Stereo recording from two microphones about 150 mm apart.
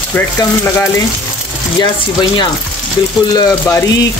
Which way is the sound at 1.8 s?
30° left (ahead or behind).